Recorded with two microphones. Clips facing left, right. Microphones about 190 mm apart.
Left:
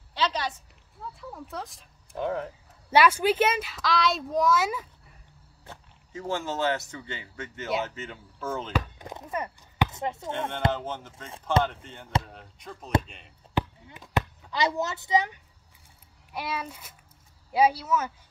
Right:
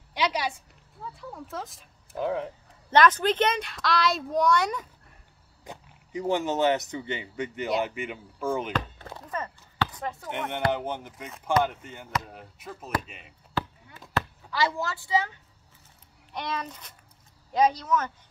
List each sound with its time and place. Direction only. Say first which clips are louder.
0.1 s a woman's voice: right 1 dB; 15° right (ahead or behind)
1.0 s speech: even; centre (ahead or behind)
5.6 s speech: right 4 dB; 15° right (ahead or behind)
8.7 s chopping: left 1 dB; 15° left (ahead or behind)
10.7 s speech: right 2 dB; 15° right (ahead or behind)
13.6 s chop: left 3 dB; 15° left (ahead or behind)
14.1 s speech: left 1 dB; 20° left (ahead or behind)
16.3 s speech: even; 5° left (ahead or behind)